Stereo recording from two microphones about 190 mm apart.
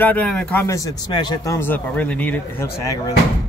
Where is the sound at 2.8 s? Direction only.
20° left (ahead or behind).